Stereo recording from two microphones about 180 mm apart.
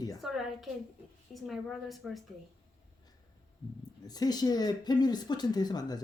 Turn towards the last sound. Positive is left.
turn(degrees=20)  # may be behind; listen again after turning